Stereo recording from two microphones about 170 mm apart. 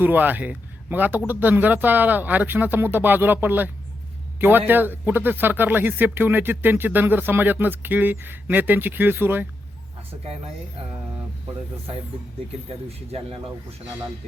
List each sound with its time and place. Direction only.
0.0 s speech: 10° right (ahead or behind)
13.1 s speech: 35° right (ahead or behind)